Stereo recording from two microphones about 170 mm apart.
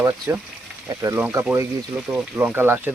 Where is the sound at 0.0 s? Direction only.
20° right (ahead or behind).